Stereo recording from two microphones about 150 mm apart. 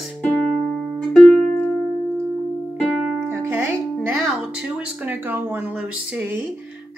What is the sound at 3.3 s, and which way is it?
Music, 15° right (ahead or behind).